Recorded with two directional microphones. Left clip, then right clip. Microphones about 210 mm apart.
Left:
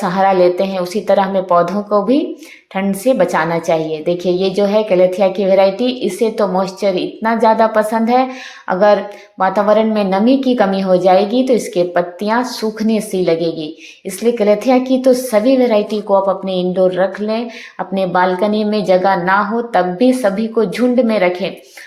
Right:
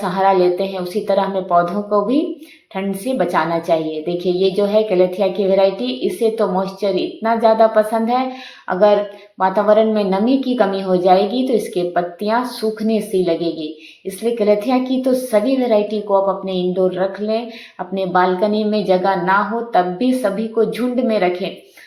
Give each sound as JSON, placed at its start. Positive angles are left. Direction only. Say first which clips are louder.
{"t": 0.0, "sound": "a woman's voice", "louder": "left 3 dB", "side_deg": 30}